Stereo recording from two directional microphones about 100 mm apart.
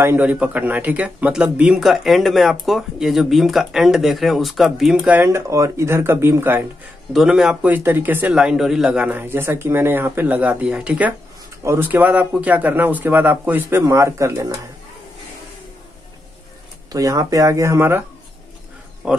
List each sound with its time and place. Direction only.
0.0 s speech: 20° right (ahead or behind)
5.2 s speech: 30° right (ahead or behind)
7.1 s speech: 5° right (ahead or behind)
7.7 s speech: 20° right (ahead or behind)
8.3 s a man's voice: 5° right (ahead or behind)
11.6 s speech: 30° right (ahead or behind)
11.9 s speech: 15° right (ahead or behind); by 14.6 s 35° right (ahead or behind)
16.9 s speech: 35° right (ahead or behind)
19.0 s a man's voice: 10° right (ahead or behind)